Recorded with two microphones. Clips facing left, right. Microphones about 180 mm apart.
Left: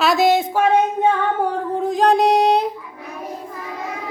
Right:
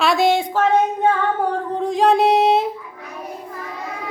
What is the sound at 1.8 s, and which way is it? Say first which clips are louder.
Female singing: even; centre (ahead or behind).